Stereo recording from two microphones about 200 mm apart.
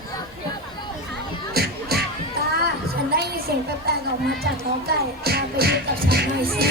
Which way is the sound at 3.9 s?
55° right (ahead or behind).